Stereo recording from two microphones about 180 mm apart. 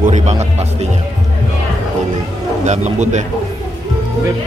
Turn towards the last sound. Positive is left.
turn(degrees=-40)  # may be behind; listen again after turning